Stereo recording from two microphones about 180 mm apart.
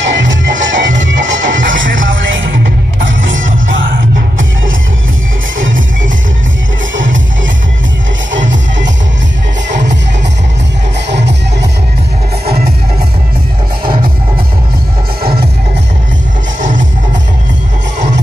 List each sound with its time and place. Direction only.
0.0 s music: 90° right
5.6 s music: 90° right
8.3 s music: 90° right